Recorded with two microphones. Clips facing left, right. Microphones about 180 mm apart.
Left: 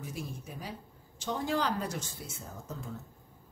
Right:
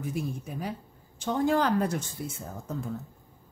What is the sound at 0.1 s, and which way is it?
Speech, 55° right (ahead or behind).